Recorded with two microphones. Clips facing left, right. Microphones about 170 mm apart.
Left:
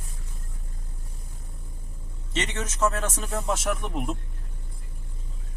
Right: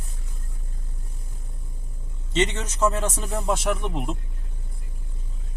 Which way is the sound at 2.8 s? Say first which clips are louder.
Right 3 dB; 30° right (ahead or behind).